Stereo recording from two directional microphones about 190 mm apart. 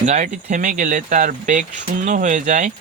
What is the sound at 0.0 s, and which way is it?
Speech, 35° right (ahead or behind).